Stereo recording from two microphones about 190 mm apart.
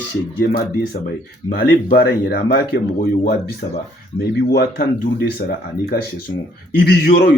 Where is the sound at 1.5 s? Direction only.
55° left (ahead or behind).